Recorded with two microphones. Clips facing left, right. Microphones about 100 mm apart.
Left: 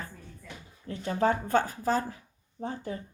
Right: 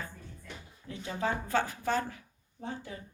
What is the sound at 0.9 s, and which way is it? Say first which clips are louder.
Speech: left 7 dB; 45° left (ahead or behind).